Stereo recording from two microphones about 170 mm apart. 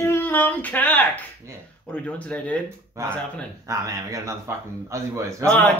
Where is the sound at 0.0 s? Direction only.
15° left (ahead or behind).